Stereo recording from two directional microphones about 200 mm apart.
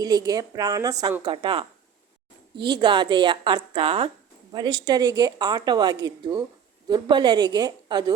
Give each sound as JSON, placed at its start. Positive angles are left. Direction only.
{"t": 0.0, "sound": "speech", "side_deg": -20}